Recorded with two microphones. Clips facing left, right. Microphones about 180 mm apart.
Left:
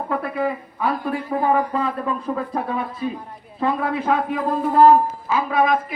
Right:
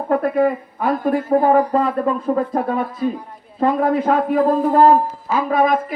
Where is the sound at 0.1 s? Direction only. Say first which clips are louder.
Right 8 dB; 45° right (ahead or behind).